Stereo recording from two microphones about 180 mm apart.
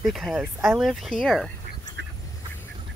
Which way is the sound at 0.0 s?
Centre (ahead or behind).